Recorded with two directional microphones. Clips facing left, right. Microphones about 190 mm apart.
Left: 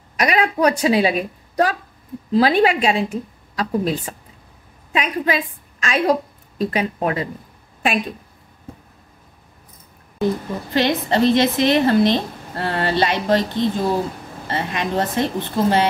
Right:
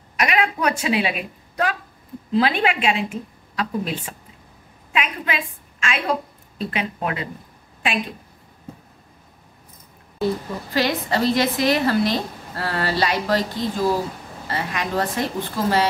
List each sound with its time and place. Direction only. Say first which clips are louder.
0.2 s a woman's voice: left 4 dB; 35° left (ahead or behind)
10.2 s a woman's voice: left 2 dB; 20° left (ahead or behind)